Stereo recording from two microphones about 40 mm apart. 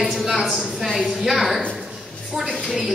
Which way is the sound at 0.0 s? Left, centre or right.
Centre.